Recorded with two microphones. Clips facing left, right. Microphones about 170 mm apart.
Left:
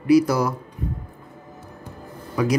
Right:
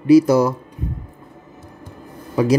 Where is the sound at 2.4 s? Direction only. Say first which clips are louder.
Right 5 dB; 25° right (ahead or behind).